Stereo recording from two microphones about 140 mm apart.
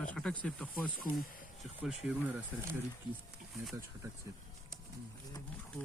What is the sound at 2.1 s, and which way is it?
Speech, 10° right (ahead or behind).